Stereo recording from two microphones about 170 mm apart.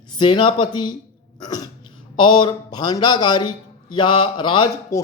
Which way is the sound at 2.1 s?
30° left (ahead or behind).